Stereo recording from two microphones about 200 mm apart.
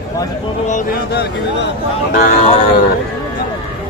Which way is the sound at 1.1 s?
55° left (ahead or behind).